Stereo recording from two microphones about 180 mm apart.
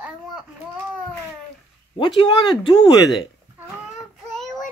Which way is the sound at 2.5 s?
25° left (ahead or behind).